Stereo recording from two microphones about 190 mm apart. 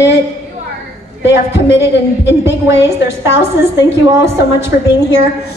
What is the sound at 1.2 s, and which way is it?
Music, 70° left (ahead or behind).